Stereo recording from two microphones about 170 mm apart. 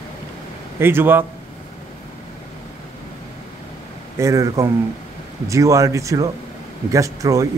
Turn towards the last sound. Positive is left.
turn(degrees=-20)  # may be behind; listen again after turning